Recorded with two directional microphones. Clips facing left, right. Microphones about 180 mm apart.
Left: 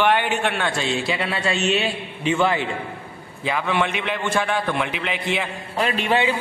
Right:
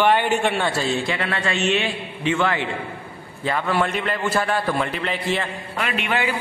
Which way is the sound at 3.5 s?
Centre (ahead or behind).